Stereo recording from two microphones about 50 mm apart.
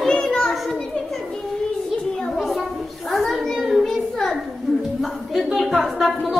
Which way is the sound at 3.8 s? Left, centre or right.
Centre.